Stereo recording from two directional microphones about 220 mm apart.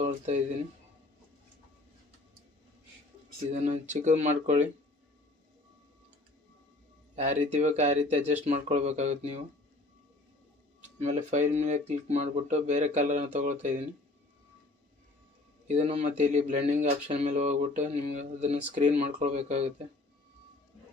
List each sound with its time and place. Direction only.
0.0 s speech: 30° right (ahead or behind)
3.5 s a man's voice: 30° right (ahead or behind)
7.2 s a man's voice: 30° right (ahead or behind)
10.8 s a man's voice: 30° right (ahead or behind)
15.6 s a man's voice: 30° right (ahead or behind)